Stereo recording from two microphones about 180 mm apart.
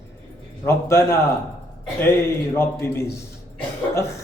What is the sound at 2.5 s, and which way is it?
Speech, 15° left (ahead or behind).